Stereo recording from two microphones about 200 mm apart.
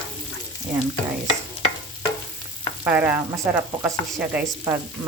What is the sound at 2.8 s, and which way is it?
Speech, 10° right (ahead or behind).